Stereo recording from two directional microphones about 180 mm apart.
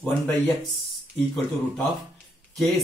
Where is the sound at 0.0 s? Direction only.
5° left (ahead or behind).